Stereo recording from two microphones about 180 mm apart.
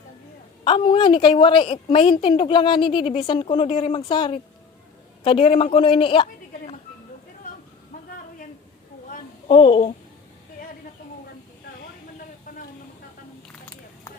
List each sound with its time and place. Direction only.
0.6 s a woman's voice: 25° left (ahead or behind)
9.5 s speech: 30° left (ahead or behind)
12.5 s a sound: 50° left (ahead or behind)